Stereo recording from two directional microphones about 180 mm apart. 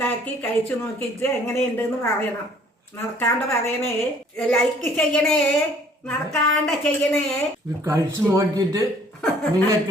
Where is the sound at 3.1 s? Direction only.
15° left (ahead or behind).